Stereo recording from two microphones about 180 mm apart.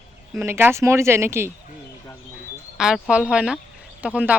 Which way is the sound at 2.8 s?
5° right (ahead or behind).